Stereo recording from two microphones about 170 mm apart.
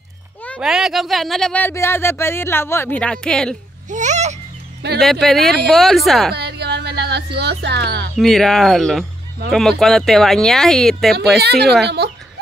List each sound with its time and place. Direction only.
0.6 s speech: 5° right (ahead or behind)
3.9 s babbling: 45° right (ahead or behind)
4.8 s speech: 70° right (ahead or behind)
5.2 s speech: centre (ahead or behind)
6.3 s music: 75° right (ahead or behind)
8.2 s speech: centre (ahead or behind)
11.3 s speech: 75° right (ahead or behind)